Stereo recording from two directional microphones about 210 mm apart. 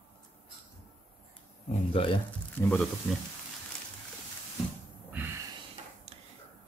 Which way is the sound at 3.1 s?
5° left (ahead or behind).